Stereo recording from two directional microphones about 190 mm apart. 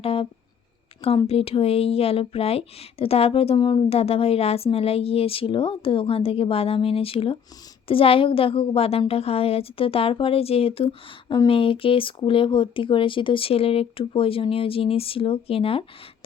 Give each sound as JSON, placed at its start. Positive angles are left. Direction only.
{"t": 0.0, "sound": "speech", "side_deg": 30}